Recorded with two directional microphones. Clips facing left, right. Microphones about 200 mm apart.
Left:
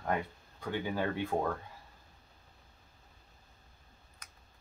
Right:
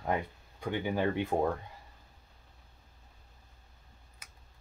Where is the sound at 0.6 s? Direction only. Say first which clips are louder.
Right 3 dB; 20° right (ahead or behind).